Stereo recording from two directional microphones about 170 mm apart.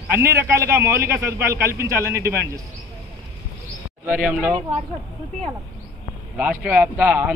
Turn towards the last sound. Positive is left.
turn(degrees=-10)  # may be behind; listen again after turning